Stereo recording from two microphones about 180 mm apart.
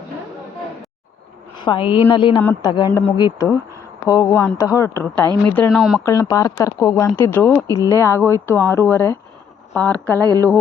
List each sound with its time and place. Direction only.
1.5 s a woman's voice: 25° left (ahead or behind)
2.9 s speech: 10° left (ahead or behind)
3.2 s a woman's voice: 20° left (ahead or behind)
5.7 s speech: centre (ahead or behind)
6.0 s speech: 15° left (ahead or behind)
10.1 s mantra: 20° right (ahead or behind)
10.3 s speech: 15° left (ahead or behind)